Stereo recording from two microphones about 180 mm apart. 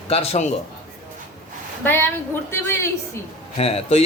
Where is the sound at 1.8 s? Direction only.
10° left (ahead or behind).